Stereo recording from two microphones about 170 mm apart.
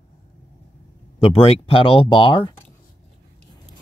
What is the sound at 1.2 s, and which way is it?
Speech, 35° left (ahead or behind).